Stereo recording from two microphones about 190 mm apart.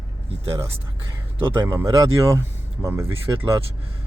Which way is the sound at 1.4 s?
10° right (ahead or behind).